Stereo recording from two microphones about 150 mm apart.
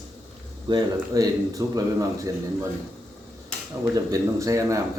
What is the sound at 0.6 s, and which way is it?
Speech, 25° right (ahead or behind).